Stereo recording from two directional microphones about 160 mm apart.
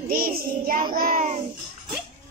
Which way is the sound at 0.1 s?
65° right (ahead or behind).